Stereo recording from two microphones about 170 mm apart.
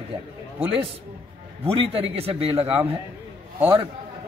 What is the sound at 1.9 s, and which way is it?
Speech, 35° right (ahead or behind).